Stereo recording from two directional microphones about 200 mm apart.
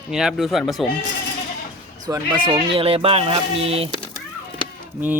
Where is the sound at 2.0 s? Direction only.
20° right (ahead or behind).